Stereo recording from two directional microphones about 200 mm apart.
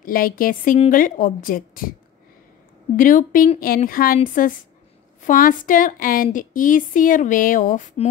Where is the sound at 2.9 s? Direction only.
45° left (ahead or behind).